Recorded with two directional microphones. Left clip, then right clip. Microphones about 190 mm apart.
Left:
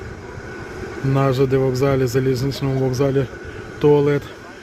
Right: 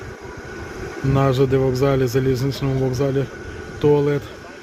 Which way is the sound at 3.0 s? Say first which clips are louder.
Left 2 dB; 10° left (ahead or behind).